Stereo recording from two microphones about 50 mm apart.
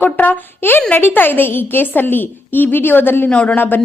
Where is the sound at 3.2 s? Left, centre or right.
Left.